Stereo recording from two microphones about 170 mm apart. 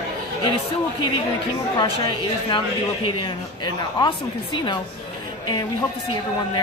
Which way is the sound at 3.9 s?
25° left (ahead or behind).